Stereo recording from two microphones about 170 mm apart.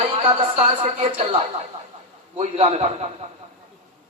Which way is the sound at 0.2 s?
35° right (ahead or behind).